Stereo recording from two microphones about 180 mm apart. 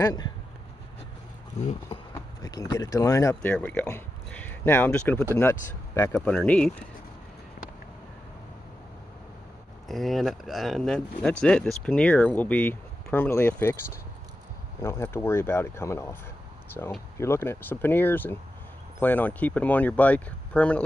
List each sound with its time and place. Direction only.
0.0 s speech: 20° left (ahead or behind)
2.4 s speech: 20° left (ahead or behind)
9.8 s speech: centre (ahead or behind)
14.8 s speech: 15° left (ahead or behind)